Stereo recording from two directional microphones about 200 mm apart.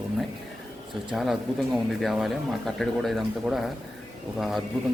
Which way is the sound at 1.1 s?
Centre (ahead or behind).